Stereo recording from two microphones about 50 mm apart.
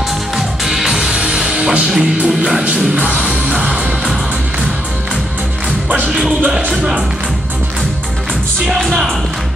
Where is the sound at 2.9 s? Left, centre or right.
Right.